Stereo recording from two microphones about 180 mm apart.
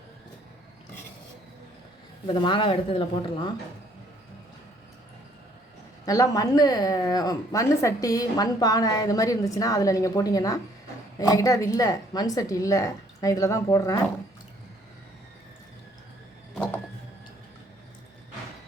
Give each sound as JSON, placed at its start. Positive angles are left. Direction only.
{"t": 2.2, "sound": "speech", "side_deg": 25}
{"t": 6.1, "sound": "speech", "side_deg": 20}